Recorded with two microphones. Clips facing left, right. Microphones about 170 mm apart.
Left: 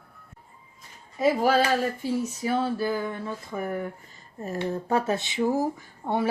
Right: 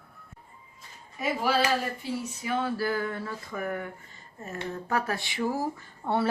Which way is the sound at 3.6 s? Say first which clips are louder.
Left 2 dB; 30° left (ahead or behind).